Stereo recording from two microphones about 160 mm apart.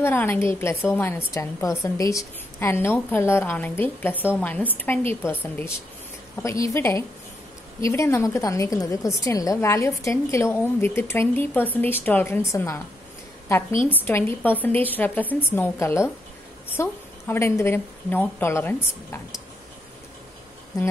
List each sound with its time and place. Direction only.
0.0 s a woman's voice: 15° left (ahead or behind)